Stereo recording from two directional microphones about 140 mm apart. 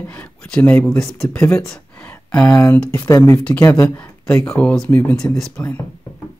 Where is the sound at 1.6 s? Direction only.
10° left (ahead or behind).